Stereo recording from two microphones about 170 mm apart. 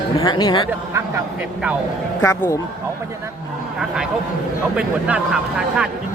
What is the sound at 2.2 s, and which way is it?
Speech, 15° left (ahead or behind).